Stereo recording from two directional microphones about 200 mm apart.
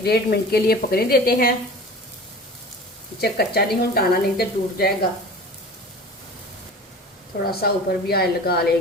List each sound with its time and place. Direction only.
0.0 s speech: 55° left (ahead or behind)
3.2 s speech: 55° left (ahead or behind)
7.6 s speech: 50° left (ahead or behind)